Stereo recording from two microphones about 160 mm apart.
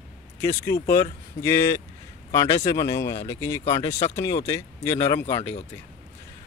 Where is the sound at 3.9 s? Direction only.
45° left (ahead or behind).